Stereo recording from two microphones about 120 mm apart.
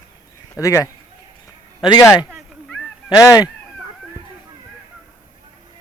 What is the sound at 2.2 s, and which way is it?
Cat, 5° right (ahead or behind).